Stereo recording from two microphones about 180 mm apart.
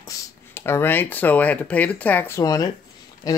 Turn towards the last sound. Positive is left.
turn(degrees=20)  # may be behind; listen again after turning